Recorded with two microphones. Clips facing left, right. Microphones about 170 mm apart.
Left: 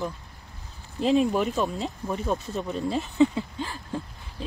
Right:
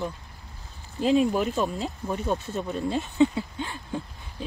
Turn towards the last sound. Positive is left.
turn(degrees=0)  # may be behind; listen again after turning